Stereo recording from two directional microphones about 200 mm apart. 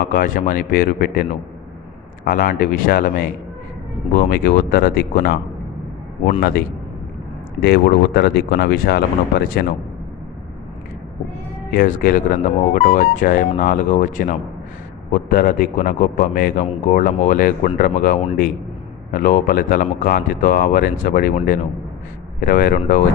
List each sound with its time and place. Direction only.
0.0 s a man's voice: 45° left (ahead or behind)
2.2 s a man's voice: 45° left (ahead or behind)
6.4 s a man's voice: 50° left (ahead or behind)
11.7 s a man's voice: 45° left (ahead or behind)